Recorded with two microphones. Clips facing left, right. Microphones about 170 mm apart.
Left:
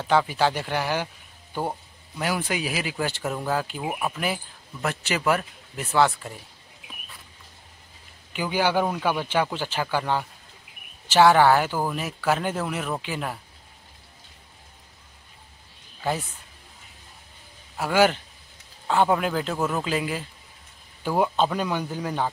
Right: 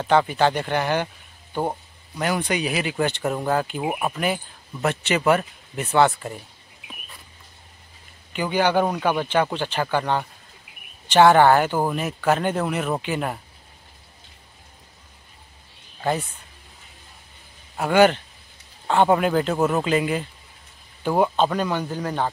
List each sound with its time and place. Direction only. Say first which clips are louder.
0.0 s speech: right 3 dB; centre (ahead or behind)
1.5 s speech: right 3 dB; 15° right (ahead or behind)
2.1 s speech: right 3 dB; 5° left (ahead or behind)
3.8 s speech: right 3 dB; 10° right (ahead or behind)
4.8 s speech: right 4 dB; centre (ahead or behind)
8.3 s speech: right 3 dB; 5° left (ahead or behind)
16.0 s speech: right 3 dB; 5° left (ahead or behind)
17.7 s speech: right 4 dB; 5° left (ahead or behind)